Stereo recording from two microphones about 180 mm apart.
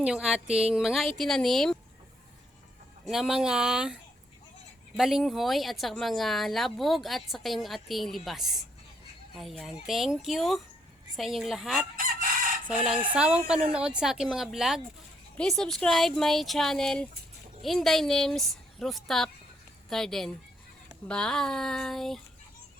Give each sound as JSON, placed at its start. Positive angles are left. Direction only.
{"t": 0.0, "sound": "speech", "side_deg": -5}
{"t": 3.1, "sound": "speech", "side_deg": 0}
{"t": 4.9, "sound": "speech", "side_deg": 0}
{"t": 11.9, "sound": "chicken", "side_deg": -50}
{"t": 13.1, "sound": "a woman's voice", "side_deg": -5}